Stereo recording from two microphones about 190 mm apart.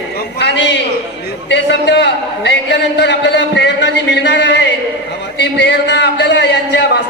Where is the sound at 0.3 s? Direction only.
65° left (ahead or behind).